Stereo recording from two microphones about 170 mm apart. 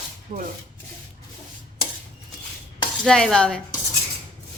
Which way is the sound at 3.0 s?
5° left (ahead or behind).